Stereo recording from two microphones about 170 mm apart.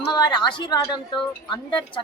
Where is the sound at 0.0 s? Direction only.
25° left (ahead or behind).